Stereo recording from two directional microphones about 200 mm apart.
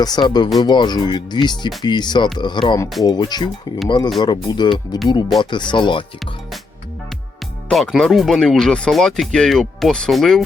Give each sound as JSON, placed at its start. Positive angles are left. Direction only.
{"t": 0.0, "sound": "speech", "side_deg": 20}
{"t": 7.7, "sound": "speech", "side_deg": 0}